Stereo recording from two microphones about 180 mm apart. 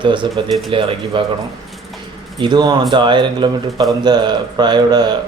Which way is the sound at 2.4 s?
25° right (ahead or behind).